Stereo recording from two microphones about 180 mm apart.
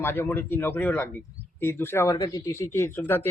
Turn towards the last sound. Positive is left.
turn(degrees=10)  # may be behind; listen again after turning